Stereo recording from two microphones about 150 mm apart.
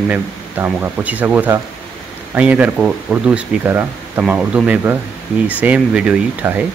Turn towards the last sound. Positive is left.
turn(degrees=-10)  # may be behind; listen again after turning